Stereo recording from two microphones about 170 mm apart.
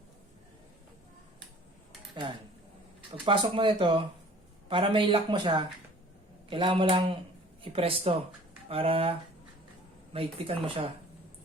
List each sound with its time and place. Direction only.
3.2 s speech: 30° right (ahead or behind)